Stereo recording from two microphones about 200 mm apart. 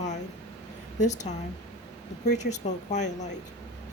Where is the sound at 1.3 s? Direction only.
30° left (ahead or behind).